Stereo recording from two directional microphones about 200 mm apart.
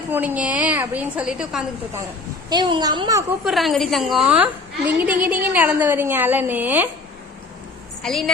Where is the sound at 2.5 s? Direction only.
20° right (ahead or behind).